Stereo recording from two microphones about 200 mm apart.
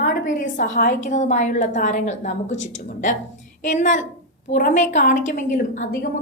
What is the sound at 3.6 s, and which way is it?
A woman's voice, 40° left (ahead or behind).